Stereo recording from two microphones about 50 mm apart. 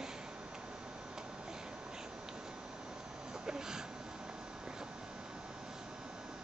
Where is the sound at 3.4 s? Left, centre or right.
Centre.